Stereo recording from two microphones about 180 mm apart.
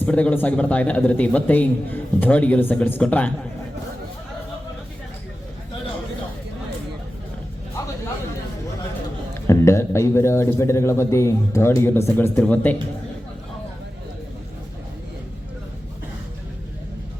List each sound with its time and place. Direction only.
0.0 s a man's voice: 10° left (ahead or behind)
9.3 s a man's voice: 15° left (ahead or behind)